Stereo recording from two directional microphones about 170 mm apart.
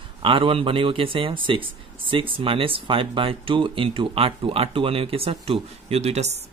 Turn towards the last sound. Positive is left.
turn(degrees=-40)  # may be behind; listen again after turning